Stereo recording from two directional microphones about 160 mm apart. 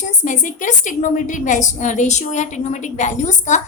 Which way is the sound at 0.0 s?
50° left (ahead or behind).